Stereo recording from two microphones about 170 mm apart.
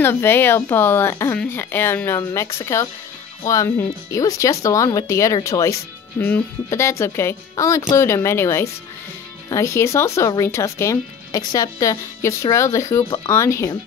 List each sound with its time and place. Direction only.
0.0 s speech: 15° left (ahead or behind)